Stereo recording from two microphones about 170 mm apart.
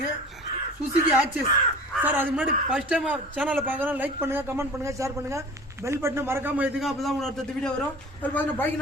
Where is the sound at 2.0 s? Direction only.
10° right (ahead or behind); by 8.6 s 10° left (ahead or behind).